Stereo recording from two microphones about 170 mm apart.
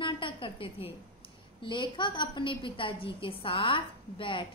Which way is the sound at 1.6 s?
30° left (ahead or behind).